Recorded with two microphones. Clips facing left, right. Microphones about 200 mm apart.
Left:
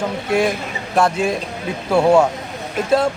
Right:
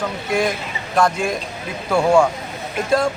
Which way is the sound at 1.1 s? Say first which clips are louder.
Left 3 dB; 25° left (ahead or behind).